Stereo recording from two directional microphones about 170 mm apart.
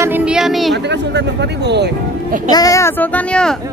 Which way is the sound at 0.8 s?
90° right.